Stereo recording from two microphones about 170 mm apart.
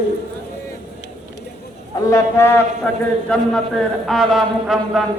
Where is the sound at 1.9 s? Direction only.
15° left (ahead or behind).